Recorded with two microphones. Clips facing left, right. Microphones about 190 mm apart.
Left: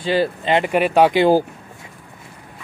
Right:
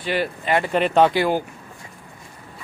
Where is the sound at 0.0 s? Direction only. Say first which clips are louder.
Left 5 dB; 30° left (ahead or behind).